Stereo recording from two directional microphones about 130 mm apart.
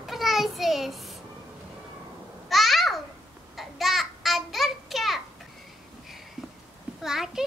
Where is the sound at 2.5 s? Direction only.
Centre (ahead or behind).